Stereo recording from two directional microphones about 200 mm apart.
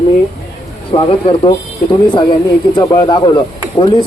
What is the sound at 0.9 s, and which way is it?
Speech, 25° left (ahead or behind).